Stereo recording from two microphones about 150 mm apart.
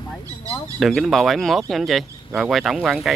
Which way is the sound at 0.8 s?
Centre (ahead or behind).